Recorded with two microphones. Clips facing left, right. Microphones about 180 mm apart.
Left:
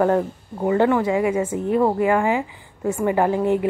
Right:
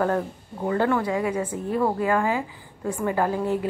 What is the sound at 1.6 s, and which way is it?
A woman's voice, 20° left (ahead or behind).